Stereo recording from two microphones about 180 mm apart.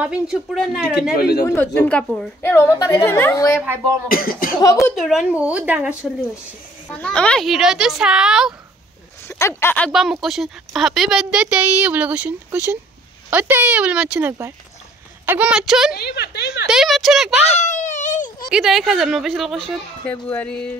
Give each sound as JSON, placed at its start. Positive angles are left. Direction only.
{"t": 0.0, "sound": "speech", "side_deg": -5}
{"t": 1.1, "sound": "speech", "side_deg": 65}
{"t": 1.4, "sound": "a woman's voice", "side_deg": 10}
{"t": 3.6, "sound": "speech", "side_deg": -15}
{"t": 4.1, "sound": "speech", "side_deg": 55}
{"t": 4.9, "sound": "speech", "side_deg": 0}
{"t": 6.9, "sound": "speech", "side_deg": 5}
{"t": 9.3, "sound": "a woman's voice", "side_deg": 15}
{"t": 10.2, "sound": "speech", "side_deg": 0}
{"t": 15.9, "sound": "speech", "side_deg": 60}
{"t": 16.6, "sound": "speech", "side_deg": 0}
{"t": 17.5, "sound": "baby cry", "side_deg": 40}
{"t": 18.5, "sound": "speech", "side_deg": 0}